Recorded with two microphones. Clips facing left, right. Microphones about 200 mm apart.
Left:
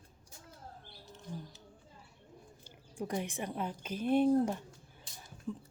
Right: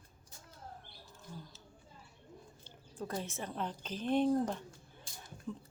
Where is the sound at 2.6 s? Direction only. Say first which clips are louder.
Left 3 dB; 15° left (ahead or behind).